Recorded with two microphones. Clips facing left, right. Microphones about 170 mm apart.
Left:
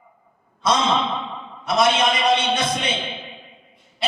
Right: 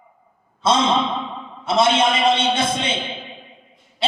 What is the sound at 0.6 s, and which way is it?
A man's voice, 25° right (ahead or behind).